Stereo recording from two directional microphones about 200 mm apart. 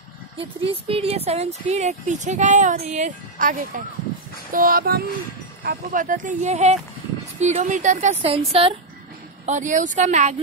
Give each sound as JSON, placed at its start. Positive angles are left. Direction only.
{"t": 0.4, "sound": "speech", "side_deg": -30}
{"t": 4.5, "sound": "music", "side_deg": -45}
{"t": 5.6, "sound": "speech", "side_deg": -45}
{"t": 9.5, "sound": "speech", "side_deg": -40}